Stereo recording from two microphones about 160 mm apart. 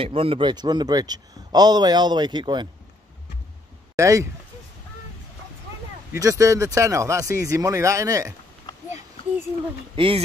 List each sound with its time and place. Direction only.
0.0 s speech: 35° right (ahead or behind)
3.9 s speech: 20° right (ahead or behind)
6.1 s speech: 20° right (ahead or behind)
9.9 s hoot: 35° right (ahead or behind)